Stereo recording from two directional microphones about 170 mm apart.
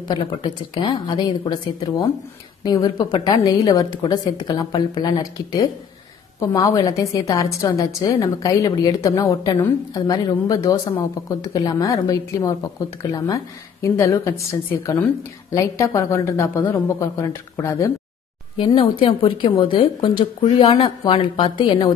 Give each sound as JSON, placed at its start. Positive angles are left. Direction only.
{"t": 0.1, "sound": "a woman's voice", "side_deg": 30}
{"t": 18.6, "sound": "a woman's voice", "side_deg": 30}